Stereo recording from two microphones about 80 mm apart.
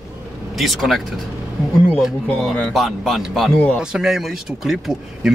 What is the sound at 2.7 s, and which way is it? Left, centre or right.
Speech, centre.